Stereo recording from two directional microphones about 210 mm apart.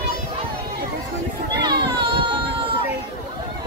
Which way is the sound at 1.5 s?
20° right (ahead or behind).